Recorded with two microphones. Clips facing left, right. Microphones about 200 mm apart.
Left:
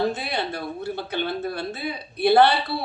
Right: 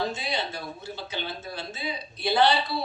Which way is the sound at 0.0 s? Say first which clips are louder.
Left 5 dB; 60° left (ahead or behind).